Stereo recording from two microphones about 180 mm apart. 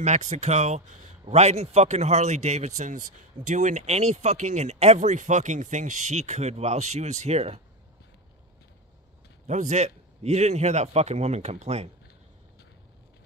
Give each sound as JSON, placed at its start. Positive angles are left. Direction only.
{"t": 0.0, "sound": "speech", "side_deg": -40}
{"t": 9.5, "sound": "speech", "side_deg": -40}